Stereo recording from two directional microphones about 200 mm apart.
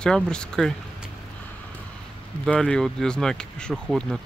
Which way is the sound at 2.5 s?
5° left (ahead or behind).